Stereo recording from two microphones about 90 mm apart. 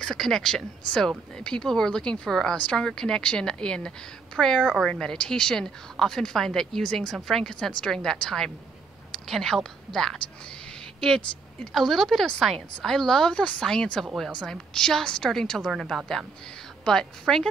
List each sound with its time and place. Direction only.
0.0 s a woman's voice: 5° left (ahead or behind)